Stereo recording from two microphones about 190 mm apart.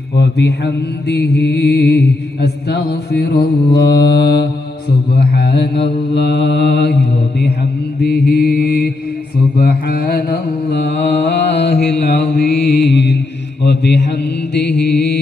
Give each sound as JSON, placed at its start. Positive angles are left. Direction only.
{"t": 0.1, "sound": "mantra", "side_deg": 65}